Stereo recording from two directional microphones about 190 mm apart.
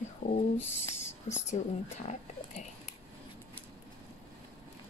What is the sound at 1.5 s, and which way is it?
A woman's voice, 40° left (ahead or behind).